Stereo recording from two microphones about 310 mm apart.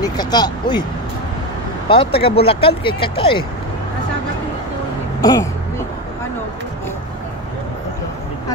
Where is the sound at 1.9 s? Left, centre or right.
Centre.